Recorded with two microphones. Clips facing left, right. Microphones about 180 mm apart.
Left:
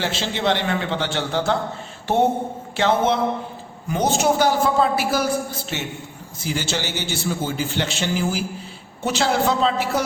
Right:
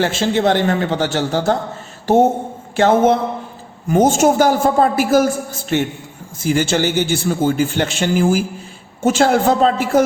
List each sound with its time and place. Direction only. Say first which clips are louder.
0.0 s a man's voice: right 7 dB; 50° right (ahead or behind)